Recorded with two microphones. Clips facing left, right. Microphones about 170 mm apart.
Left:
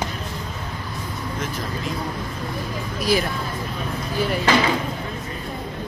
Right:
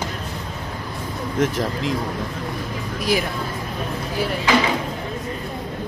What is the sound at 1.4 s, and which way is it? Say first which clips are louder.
Speech: right 9 dB; 80° right.